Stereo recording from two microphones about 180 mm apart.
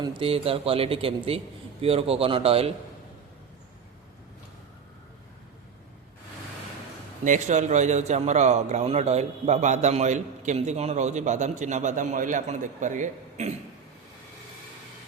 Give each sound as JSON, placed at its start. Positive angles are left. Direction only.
{"t": 0.0, "sound": "a man's voice", "side_deg": -30}
{"t": 7.3, "sound": "a man's voice", "side_deg": -40}